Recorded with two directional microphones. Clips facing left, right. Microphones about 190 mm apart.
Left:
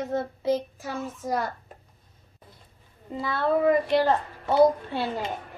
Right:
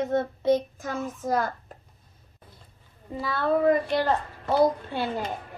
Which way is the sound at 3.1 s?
25° left (ahead or behind).